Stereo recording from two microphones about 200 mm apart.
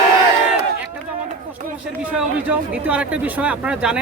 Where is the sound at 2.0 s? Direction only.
5° right (ahead or behind).